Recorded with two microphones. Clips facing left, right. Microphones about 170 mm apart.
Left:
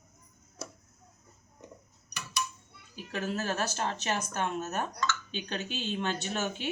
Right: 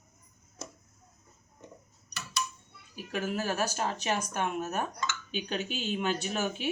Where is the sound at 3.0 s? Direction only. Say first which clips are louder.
Right 1 dB; 15° right (ahead or behind).